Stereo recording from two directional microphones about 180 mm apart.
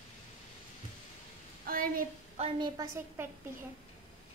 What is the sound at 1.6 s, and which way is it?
Speech, 50° right (ahead or behind).